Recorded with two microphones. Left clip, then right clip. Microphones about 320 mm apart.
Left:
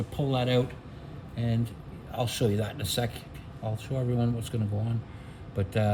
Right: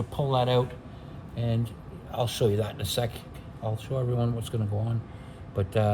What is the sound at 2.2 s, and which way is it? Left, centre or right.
Speech, centre.